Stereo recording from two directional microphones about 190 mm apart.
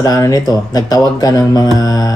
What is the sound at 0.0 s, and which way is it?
Speech, 20° left (ahead or behind).